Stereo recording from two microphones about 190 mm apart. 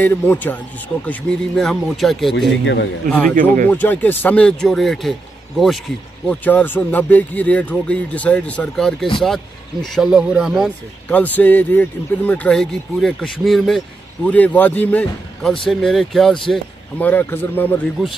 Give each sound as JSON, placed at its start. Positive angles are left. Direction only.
{"t": 0.0, "sound": "speech", "side_deg": 10}
{"t": 1.6, "sound": "speech", "side_deg": 0}
{"t": 2.3, "sound": "speech", "side_deg": 70}
{"t": 3.1, "sound": "speech", "side_deg": 5}
{"t": 6.2, "sound": "speech", "side_deg": 10}